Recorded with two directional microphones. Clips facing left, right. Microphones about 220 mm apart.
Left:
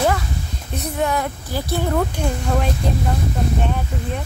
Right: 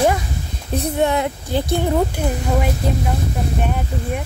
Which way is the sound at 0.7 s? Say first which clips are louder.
Right 4 dB; 25° right (ahead or behind).